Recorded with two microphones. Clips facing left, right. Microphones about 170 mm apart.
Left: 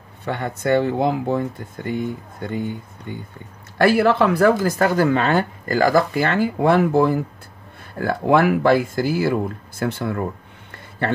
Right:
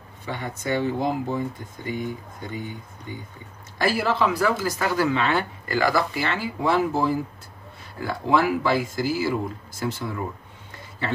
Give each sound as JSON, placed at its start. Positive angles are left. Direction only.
{"t": 0.2, "sound": "speech", "side_deg": 60}
{"t": 3.7, "sound": "speech", "side_deg": 65}
{"t": 10.7, "sound": "a sound", "side_deg": 60}